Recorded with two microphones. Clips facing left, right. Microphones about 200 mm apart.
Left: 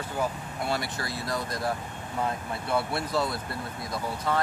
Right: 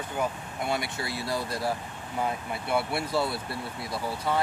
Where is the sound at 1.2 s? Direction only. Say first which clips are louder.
Right 1 dB; 30° right (ahead or behind).